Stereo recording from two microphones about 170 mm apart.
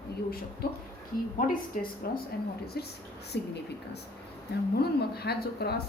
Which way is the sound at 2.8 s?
70° left (ahead or behind).